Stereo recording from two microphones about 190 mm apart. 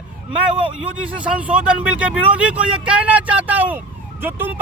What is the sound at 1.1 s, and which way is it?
Speech, 5° right (ahead or behind).